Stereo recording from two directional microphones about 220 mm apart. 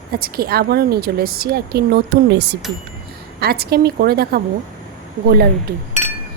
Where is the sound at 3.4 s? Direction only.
45° right (ahead or behind).